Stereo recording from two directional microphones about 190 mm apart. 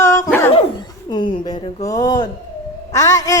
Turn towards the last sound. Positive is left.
turn(degrees=15)  # may be behind; listen again after turning